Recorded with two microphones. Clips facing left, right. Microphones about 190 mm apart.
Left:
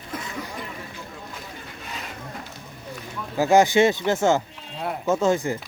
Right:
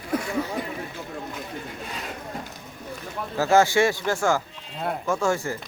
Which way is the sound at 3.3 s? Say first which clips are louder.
Left 2 dB; 15° left (ahead or behind).